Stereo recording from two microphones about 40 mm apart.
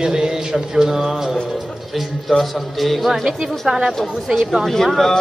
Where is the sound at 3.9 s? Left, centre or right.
Centre.